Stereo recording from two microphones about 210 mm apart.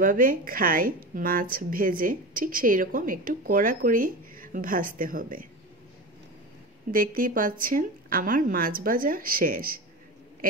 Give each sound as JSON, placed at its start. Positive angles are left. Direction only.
{"t": 0.0, "sound": "a woman's voice", "side_deg": -40}
{"t": 6.9, "sound": "a woman's voice", "side_deg": -40}